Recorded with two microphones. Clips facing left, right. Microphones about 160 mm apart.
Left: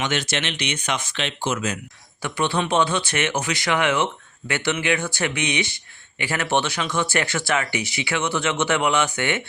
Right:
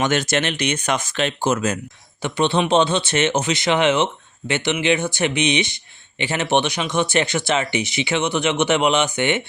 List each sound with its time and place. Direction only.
0.0 s speech: 45° right (ahead or behind)
2.2 s speech: 25° right (ahead or behind)